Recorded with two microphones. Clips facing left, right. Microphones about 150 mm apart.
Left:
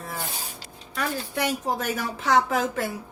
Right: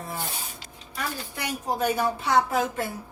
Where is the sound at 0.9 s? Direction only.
90° left.